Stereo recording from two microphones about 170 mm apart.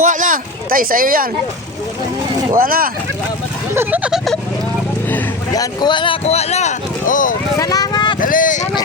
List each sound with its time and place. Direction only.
0.0 s speech: 50° right (ahead or behind)
2.5 s speech: 60° right (ahead or behind)
3.8 s speech: 10° right (ahead or behind)
5.5 s speech: 25° left (ahead or behind); by 7.3 s 50° left (ahead or behind)
7.5 s vehicle: 20° left (ahead or behind)
8.2 s speech: 55° left (ahead or behind)